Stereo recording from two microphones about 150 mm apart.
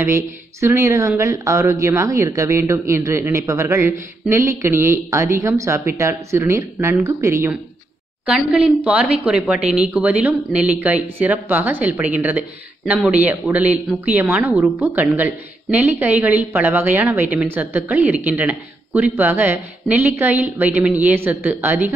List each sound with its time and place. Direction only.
0.0 s speech: 20° right (ahead or behind)
8.3 s a woman's voice: 10° right (ahead or behind)